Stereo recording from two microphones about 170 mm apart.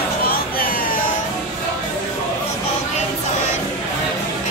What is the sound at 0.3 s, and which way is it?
Music, 60° left (ahead or behind).